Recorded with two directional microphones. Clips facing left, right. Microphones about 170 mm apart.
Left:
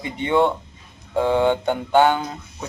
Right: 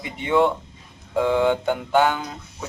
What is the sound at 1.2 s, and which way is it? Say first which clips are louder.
Mantra: left 1 dB; 30° left (ahead or behind).